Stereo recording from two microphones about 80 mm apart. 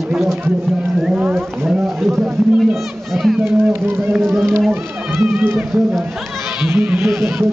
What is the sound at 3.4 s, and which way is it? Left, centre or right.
Speech, right.